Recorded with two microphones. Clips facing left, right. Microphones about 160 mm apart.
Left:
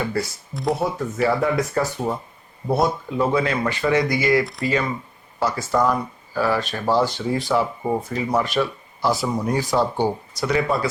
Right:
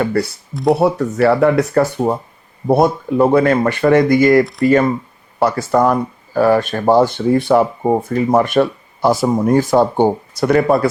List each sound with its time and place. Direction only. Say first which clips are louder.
0.0 s speech: right 7 dB; 60° right (ahead or behind)